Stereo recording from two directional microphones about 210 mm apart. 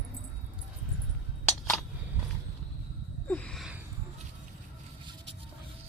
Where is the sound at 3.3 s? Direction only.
5° left (ahead or behind).